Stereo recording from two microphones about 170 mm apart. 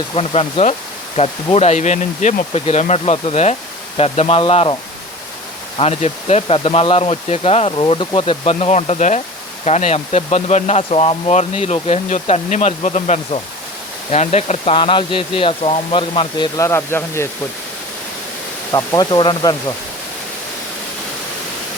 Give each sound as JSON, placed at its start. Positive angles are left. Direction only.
{"t": 0.1, "sound": "speech", "side_deg": 35}
{"t": 16.6, "sound": "speech", "side_deg": 15}
{"t": 18.7, "sound": "speech", "side_deg": 20}